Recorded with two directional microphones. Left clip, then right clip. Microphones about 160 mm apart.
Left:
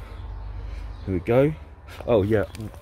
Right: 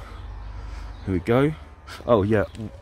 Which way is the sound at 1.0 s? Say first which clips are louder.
Left 1 dB; 40° right (ahead or behind).